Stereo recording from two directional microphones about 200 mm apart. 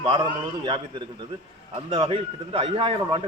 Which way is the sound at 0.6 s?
25° right (ahead or behind).